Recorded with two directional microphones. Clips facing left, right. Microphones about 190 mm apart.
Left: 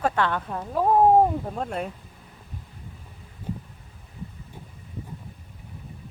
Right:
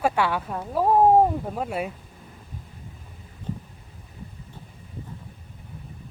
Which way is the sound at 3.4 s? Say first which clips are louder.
Even; 10° left (ahead or behind).